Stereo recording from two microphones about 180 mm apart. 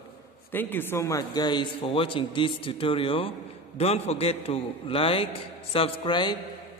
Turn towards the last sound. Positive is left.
turn(degrees=25)  # may be behind; listen again after turning